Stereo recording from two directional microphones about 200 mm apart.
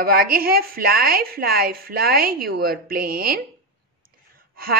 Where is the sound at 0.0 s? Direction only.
50° right (ahead or behind).